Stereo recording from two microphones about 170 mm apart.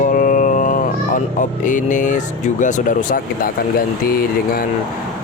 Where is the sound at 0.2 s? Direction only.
50° left (ahead or behind).